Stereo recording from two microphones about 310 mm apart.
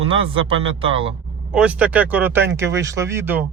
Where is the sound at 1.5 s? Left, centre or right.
Centre.